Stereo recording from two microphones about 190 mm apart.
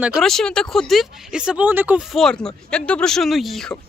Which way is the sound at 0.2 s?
Centre (ahead or behind).